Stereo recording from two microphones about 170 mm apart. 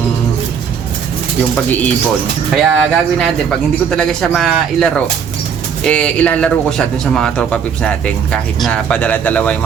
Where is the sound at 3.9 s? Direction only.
Centre (ahead or behind).